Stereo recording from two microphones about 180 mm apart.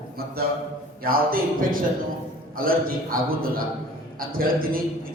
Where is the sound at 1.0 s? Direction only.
55° right (ahead or behind).